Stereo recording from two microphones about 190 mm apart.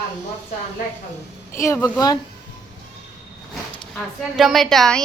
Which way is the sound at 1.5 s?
15° left (ahead or behind).